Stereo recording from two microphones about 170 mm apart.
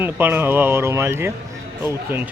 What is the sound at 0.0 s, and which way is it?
Speech, 10° right (ahead or behind).